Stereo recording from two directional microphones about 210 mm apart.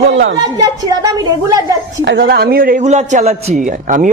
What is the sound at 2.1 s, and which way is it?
A man's voice, 50° right (ahead or behind).